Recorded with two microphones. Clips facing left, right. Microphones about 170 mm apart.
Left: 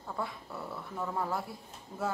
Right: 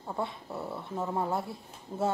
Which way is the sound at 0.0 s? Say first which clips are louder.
Right 3 dB; 25° right (ahead or behind).